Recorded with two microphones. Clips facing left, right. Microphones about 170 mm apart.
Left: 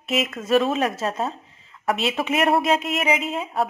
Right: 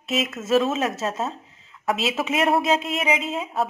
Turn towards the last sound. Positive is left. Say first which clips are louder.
# left 1 dB
turn(degrees=0)  # may be behind; listen again after turning